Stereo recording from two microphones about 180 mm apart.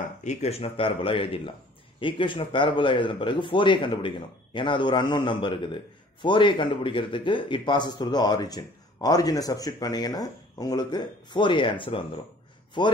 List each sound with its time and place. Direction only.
0.2 s a man's voice: 40° left (ahead or behind)